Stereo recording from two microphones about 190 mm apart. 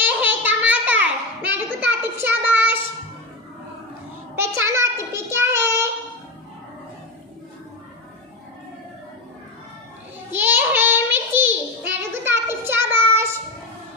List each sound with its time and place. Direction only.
0.0 s a sound: 10° right (ahead or behind)
4.4 s child singing: 15° right (ahead or behind)
10.3 s child singing: 10° right (ahead or behind)